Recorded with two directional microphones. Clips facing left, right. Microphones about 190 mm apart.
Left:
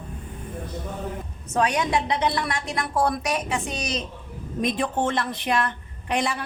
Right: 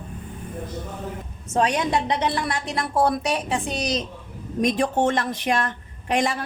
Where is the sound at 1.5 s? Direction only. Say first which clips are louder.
Right 1 dB; 30° right (ahead or behind).